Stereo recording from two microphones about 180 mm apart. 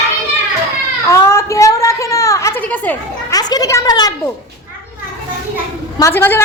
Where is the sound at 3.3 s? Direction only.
20° left (ahead or behind).